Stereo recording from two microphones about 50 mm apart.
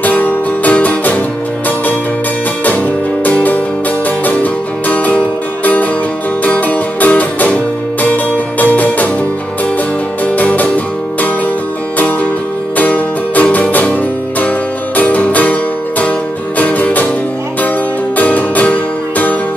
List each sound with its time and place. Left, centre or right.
0.0 s music: left
3.3 s music: left
6.4 s music: left
10.2 s music: left
12.7 s music: left
15.0 s music: left
18.1 s music: left